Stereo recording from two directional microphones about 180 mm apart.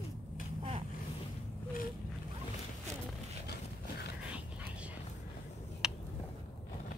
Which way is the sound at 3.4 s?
65° left (ahead or behind).